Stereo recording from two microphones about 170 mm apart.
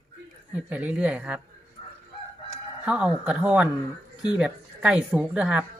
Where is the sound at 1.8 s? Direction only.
35° left (ahead or behind).